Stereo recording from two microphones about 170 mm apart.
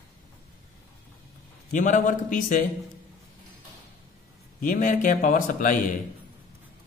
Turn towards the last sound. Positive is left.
turn(degrees=50)  # may be behind; listen again after turning